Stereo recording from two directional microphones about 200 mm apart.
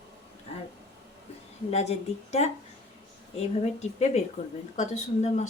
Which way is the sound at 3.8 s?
35° left (ahead or behind).